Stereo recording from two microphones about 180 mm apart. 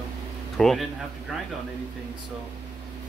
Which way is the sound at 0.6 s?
Centre (ahead or behind).